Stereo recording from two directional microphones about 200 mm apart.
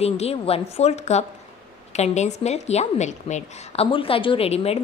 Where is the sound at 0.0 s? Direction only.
30° left (ahead or behind).